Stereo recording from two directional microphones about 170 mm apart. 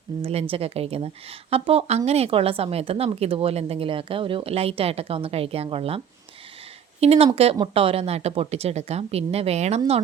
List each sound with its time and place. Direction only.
0.2 s a woman's voice: 35° right (ahead or behind)
7.0 s a woman's voice: 35° right (ahead or behind)